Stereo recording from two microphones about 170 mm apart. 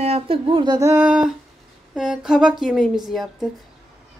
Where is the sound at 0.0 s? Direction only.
35° right (ahead or behind).